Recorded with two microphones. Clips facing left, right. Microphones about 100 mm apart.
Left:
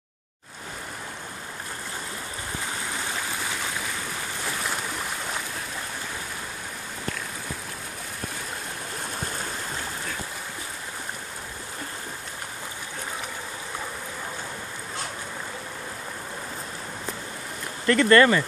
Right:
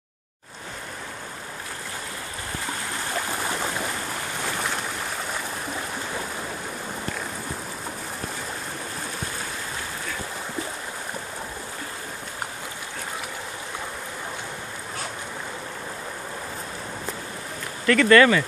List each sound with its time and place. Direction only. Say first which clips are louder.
17.8 s speech: right 1 dB; 30° left (ahead or behind)